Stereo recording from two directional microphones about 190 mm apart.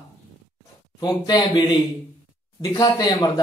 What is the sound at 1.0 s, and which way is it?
Speech, 20° left (ahead or behind).